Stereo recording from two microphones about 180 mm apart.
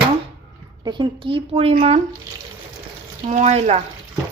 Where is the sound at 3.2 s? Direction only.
40° right (ahead or behind).